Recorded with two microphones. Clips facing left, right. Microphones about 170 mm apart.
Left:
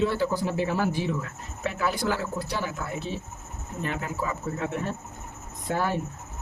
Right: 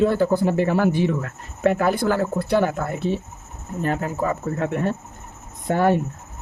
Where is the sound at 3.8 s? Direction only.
45° right (ahead or behind).